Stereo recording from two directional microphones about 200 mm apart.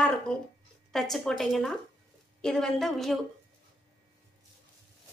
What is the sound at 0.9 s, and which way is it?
Speech, centre (ahead or behind).